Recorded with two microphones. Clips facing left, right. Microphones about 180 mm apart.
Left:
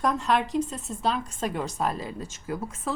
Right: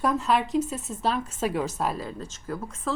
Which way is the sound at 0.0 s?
Centre (ahead or behind).